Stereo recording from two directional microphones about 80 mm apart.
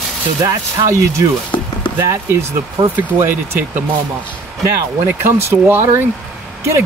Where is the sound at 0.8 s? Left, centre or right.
Right.